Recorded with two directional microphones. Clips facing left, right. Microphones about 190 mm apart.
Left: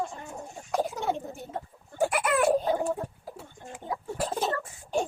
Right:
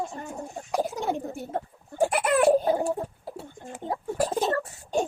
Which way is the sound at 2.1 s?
35° right (ahead or behind).